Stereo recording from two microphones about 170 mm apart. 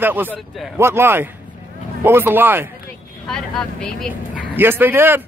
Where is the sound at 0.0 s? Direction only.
10° right (ahead or behind).